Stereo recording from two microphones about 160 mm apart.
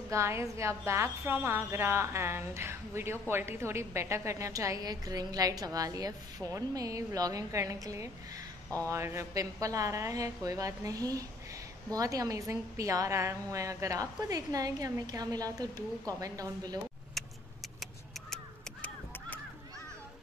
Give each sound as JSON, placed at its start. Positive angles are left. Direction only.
{"t": 0.1, "sound": "a woman's voice", "side_deg": -15}
{"t": 17.2, "sound": "vehicle", "side_deg": 0}